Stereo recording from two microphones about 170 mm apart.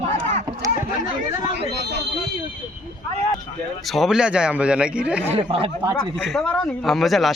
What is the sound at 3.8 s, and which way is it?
Speech, centre (ahead or behind).